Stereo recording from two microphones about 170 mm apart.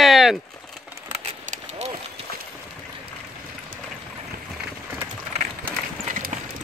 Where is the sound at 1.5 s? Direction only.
40° right (ahead or behind).